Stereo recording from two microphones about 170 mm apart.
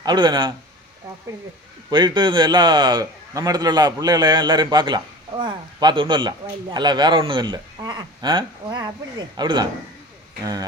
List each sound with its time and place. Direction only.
0.0 s a man's voice: 25° right (ahead or behind)
1.9 s a man's voice: 25° right (ahead or behind)